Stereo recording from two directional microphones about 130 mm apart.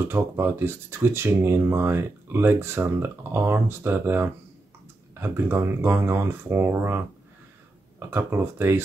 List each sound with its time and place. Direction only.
0.1 s speech: 20° right (ahead or behind)
8.0 s speech: 20° right (ahead or behind)